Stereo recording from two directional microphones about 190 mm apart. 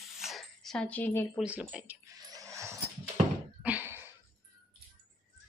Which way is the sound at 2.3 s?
15° right (ahead or behind).